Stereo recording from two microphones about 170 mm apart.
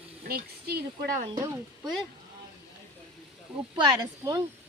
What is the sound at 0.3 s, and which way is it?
Speech, 60° right (ahead or behind).